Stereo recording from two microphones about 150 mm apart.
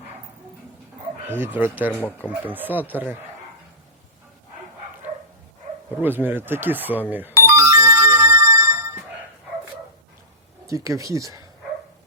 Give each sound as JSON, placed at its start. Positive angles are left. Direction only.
{"t": 1.3, "sound": "speech", "side_deg": -10}
{"t": 1.9, "sound": "speech", "side_deg": 10}
{"t": 2.3, "sound": "speech", "side_deg": -10}
{"t": 6.0, "sound": "speech", "side_deg": -15}
{"t": 7.1, "sound": "ringtone", "side_deg": -15}
{"t": 10.7, "sound": "speech", "side_deg": -20}